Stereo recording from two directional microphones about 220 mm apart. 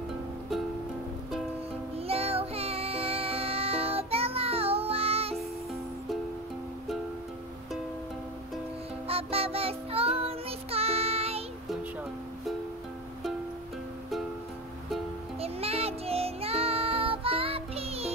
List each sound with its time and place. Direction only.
2.0 s music: 25° right (ahead or behind)
9.0 s music: 25° right (ahead or behind)
15.4 s music: 25° right (ahead or behind)